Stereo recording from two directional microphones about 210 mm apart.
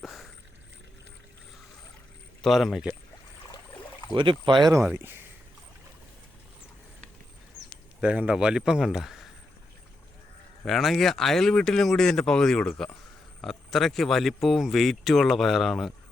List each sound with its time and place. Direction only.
0.0 s a sound: centre (ahead or behind)
2.4 s speech: centre (ahead or behind)
4.1 s speech: 20° right (ahead or behind)
4.7 s speech: centre (ahead or behind)
8.0 s speech: 5° right (ahead or behind)
10.7 s speech: centre (ahead or behind)